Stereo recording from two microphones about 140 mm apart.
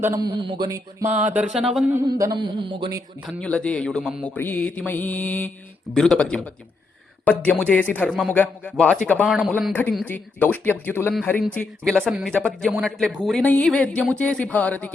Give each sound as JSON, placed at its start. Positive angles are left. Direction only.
{"t": 0.0, "sound": "speech", "side_deg": -25}
{"t": 1.1, "sound": "speech", "side_deg": -10}
{"t": 2.0, "sound": "a sound", "side_deg": -25}
{"t": 3.2, "sound": "speech", "side_deg": 10}
{"t": 8.1, "sound": "speech", "side_deg": 0}
{"t": 13.4, "sound": "speech", "side_deg": 10}